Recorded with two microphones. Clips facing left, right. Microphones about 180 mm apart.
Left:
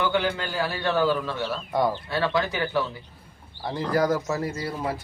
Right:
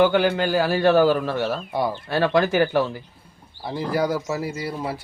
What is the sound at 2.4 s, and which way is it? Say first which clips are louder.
Speech: right 8 dB; 90° right.